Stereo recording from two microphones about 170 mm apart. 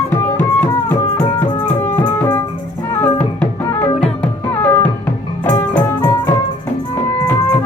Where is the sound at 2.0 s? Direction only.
25° left (ahead or behind).